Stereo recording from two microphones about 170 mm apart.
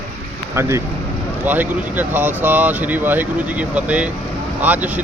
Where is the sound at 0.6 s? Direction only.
15° right (ahead or behind).